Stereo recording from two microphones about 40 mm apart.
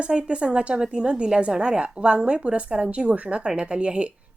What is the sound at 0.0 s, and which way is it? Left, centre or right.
Speech, right.